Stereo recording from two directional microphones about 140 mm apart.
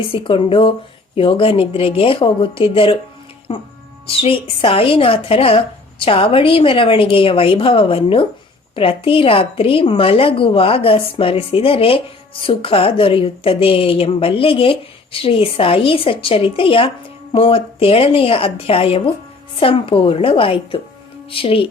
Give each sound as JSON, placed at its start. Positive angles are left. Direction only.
{"t": 0.0, "sound": "a woman's voice", "side_deg": 40}